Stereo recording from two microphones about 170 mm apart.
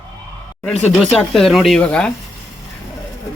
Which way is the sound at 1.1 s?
Centre (ahead or behind).